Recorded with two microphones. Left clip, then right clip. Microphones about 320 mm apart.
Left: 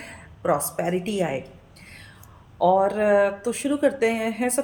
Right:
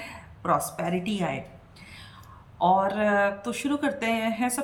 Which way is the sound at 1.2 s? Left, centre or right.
Right.